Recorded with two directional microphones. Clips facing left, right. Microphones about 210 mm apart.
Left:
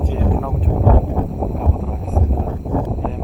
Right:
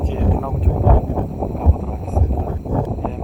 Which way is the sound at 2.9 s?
Centre (ahead or behind).